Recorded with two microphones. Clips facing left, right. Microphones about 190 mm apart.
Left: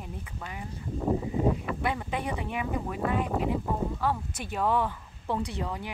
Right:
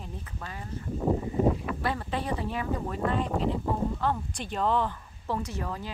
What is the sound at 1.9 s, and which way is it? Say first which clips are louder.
Speech: right 1 dB; 15° left (ahead or behind).